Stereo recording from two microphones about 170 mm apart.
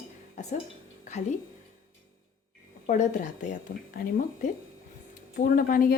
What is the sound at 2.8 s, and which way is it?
A woman's voice, 50° left (ahead or behind).